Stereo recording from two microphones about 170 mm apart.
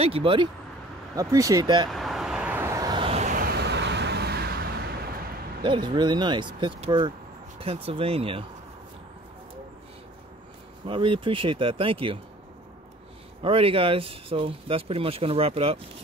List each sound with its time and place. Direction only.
0.0 s speech: 35° right (ahead or behind)
1.1 s speech: 20° right (ahead or behind)
1.9 s vehicle: centre (ahead or behind); by 3.3 s 30° right (ahead or behind)
3.3 s vehicle: 60° right (ahead or behind)
5.6 s speech: 25° right (ahead or behind)
10.9 s speech: 30° right (ahead or behind)
13.4 s speech: 35° right (ahead or behind)